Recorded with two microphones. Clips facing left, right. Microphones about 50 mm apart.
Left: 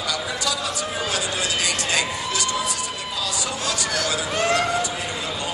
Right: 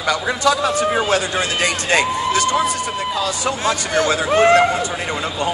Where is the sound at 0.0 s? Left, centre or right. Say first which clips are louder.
Right 8 dB; right.